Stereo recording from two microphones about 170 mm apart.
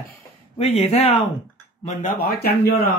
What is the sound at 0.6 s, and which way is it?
Speech, 35° left (ahead or behind).